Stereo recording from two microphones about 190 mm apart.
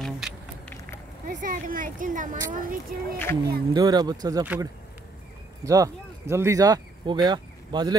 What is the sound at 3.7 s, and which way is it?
Speech, 20° right (ahead or behind).